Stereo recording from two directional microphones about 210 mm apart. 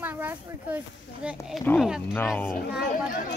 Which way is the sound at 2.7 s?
50° left (ahead or behind).